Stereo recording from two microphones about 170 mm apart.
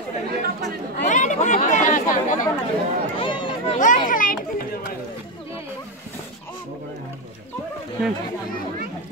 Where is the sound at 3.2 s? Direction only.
30° left (ahead or behind).